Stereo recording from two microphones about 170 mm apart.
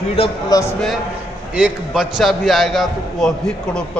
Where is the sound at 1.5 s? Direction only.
5° right (ahead or behind).